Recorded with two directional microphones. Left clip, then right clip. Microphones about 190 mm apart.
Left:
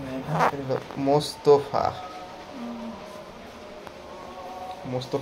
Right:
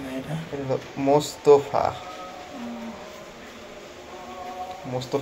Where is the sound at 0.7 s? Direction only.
Centre (ahead or behind).